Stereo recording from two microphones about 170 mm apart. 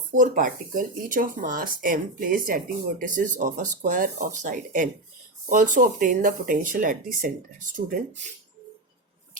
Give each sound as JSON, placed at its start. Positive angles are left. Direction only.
{"t": 0.2, "sound": "speech", "side_deg": -50}